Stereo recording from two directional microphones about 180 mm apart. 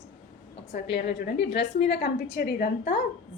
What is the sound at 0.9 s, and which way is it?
A woman's voice, 65° left (ahead or behind).